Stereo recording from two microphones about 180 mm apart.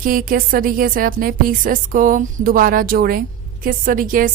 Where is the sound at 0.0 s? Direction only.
50° right (ahead or behind).